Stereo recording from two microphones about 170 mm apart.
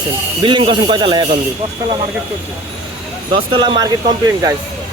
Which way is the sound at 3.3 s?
30° right (ahead or behind).